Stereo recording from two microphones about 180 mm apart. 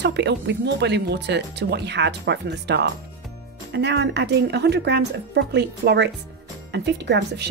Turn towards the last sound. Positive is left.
turn(degrees=-70)  # may be behind; listen again after turning